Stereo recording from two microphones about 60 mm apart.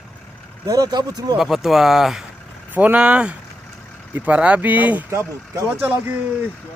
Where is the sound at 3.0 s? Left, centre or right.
Centre.